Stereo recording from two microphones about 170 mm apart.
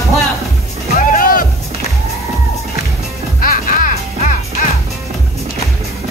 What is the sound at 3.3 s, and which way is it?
Music, 55° left (ahead or behind).